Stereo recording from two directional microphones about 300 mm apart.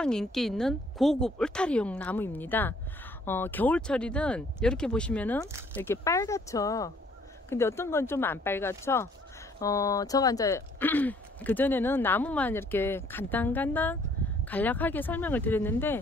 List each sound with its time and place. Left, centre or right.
0.0 s a woman's voice: centre